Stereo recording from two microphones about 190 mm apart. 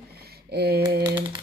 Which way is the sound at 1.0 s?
25° right (ahead or behind).